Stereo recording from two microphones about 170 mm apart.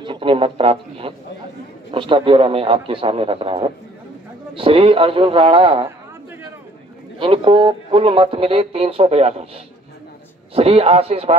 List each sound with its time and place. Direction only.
0.0 s speech: 30° right (ahead or behind)
7.2 s speech: 30° right (ahead or behind)
10.5 s speech: 35° right (ahead or behind)